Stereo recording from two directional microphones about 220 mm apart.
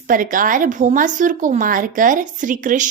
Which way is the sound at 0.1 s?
35° right (ahead or behind).